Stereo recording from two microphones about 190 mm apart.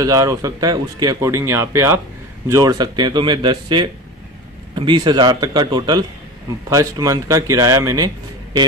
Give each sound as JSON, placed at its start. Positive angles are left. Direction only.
{"t": 0.0, "sound": "speech", "side_deg": -20}